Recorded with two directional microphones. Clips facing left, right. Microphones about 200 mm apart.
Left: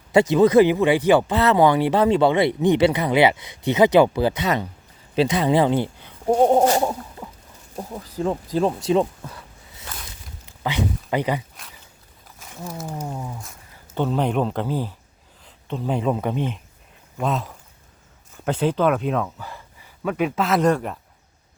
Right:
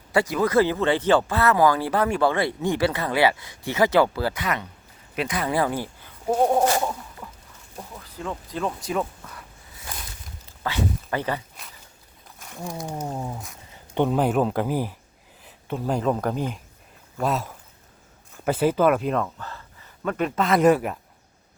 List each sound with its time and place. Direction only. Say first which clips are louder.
0.1 s speech: left 6 dB; 25° left (ahead or behind)
6.7 s chicken: left 4 dB; 25° left (ahead or behind)
7.8 s speech: left 9 dB; 35° left (ahead or behind)
10.4 s speech: left 2 dB; 15° left (ahead or behind)
12.9 s speech: even; 10° right (ahead or behind)
13.1 s speech: right 1 dB; 25° right (ahead or behind)
14.2 s speech: right 1 dB; 5° right (ahead or behind)
15.4 s a sound: even; 10° right (ahead or behind)
15.9 s speech: left 1 dB; centre (ahead or behind)
19.5 s gasp: left 1 dB; 10° left (ahead or behind)
20.6 s speech: right 4 dB; 5° right (ahead or behind)